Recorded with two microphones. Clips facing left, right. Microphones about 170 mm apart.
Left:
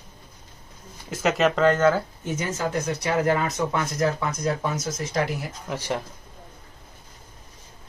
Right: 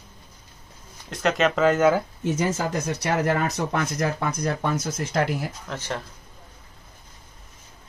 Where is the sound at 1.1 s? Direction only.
Centre (ahead or behind).